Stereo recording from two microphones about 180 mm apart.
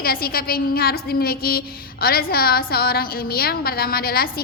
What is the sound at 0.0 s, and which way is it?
A woman's voice, 55° left (ahead or behind).